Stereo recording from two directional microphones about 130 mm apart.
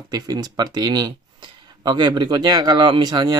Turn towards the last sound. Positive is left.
turn(degrees=-35)  # may be behind; listen again after turning